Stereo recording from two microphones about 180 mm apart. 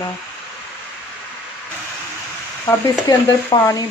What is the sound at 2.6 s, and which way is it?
Speech, 15° left (ahead or behind).